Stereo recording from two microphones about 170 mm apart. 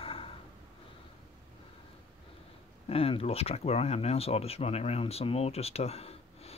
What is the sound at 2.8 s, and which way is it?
Speech, 35° left (ahead or behind).